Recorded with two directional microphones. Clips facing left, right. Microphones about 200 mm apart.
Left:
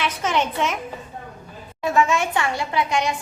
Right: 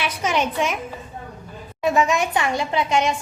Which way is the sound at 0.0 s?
10° right (ahead or behind).